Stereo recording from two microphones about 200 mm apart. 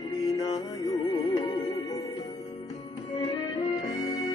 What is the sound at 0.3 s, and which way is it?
Music, 20° left (ahead or behind).